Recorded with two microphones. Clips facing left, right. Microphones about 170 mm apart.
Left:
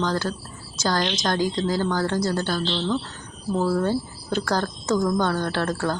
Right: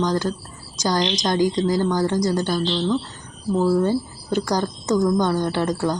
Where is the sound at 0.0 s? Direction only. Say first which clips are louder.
Right 3 dB; 15° right (ahead or behind).